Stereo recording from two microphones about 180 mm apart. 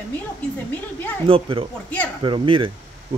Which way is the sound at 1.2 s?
30° right (ahead or behind).